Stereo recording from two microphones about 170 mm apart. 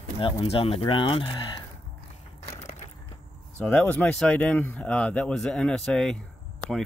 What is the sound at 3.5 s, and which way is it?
Speech, 5° left (ahead or behind).